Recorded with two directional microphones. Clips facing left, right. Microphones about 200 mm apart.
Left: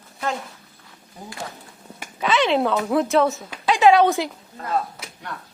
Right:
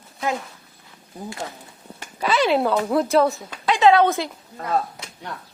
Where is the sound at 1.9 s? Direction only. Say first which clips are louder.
Even; centre (ahead or behind).